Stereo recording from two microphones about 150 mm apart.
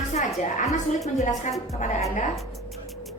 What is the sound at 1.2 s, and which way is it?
Speech, 55° left (ahead or behind).